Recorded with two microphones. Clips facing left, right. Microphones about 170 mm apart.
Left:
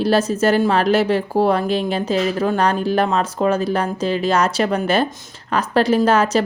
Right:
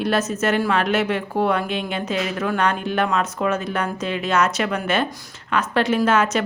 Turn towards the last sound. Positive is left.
turn(degrees=35)  # may be behind; listen again after turning